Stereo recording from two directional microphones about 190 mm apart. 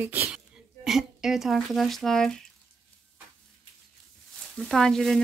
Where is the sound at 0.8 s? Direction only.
Centre (ahead or behind).